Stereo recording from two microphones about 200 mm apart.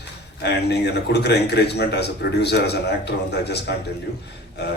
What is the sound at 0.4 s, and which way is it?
A man's voice, 55° left (ahead or behind).